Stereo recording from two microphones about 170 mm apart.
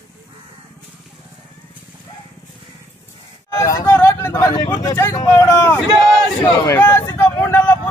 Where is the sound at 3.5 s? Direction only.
20° left (ahead or behind).